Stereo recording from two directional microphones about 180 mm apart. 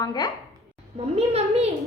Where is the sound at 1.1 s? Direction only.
35° right (ahead or behind).